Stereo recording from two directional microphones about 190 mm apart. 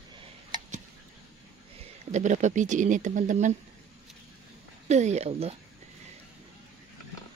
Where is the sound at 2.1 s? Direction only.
40° right (ahead or behind).